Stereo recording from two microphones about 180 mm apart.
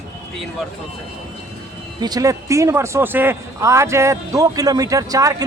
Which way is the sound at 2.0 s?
20° right (ahead or behind).